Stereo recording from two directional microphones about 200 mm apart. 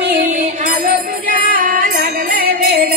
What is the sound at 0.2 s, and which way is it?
Music, 40° right (ahead or behind).